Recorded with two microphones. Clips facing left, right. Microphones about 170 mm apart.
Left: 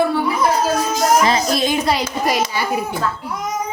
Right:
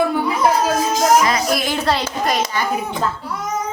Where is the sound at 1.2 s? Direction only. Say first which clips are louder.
Left 2 dB; 25° left (ahead or behind).